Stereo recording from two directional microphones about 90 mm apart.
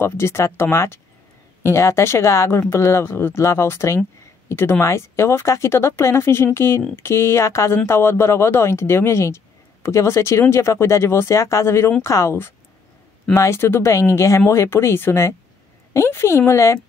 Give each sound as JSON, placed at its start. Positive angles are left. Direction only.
{"t": 0.0, "sound": "speech", "side_deg": 30}